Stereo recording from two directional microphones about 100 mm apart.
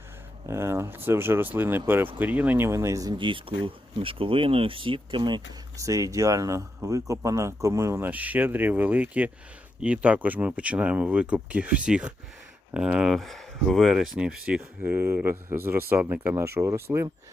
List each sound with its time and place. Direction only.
0.4 s speech: 25° right (ahead or behind)
2.6 s speech: 30° right (ahead or behind)
3.2 s speech: 60° right (ahead or behind)
5.7 s speech: 35° right (ahead or behind); by 14.6 s 10° right (ahead or behind)
14.6 s speech: 20° right (ahead or behind)